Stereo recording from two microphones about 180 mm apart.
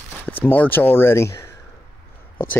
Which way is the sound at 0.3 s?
10° left (ahead or behind).